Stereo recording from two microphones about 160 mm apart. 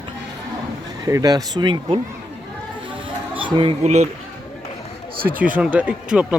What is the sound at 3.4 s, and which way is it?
Speech, 30° right (ahead or behind).